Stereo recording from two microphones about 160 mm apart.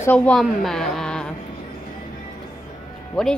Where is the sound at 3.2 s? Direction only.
Centre (ahead or behind).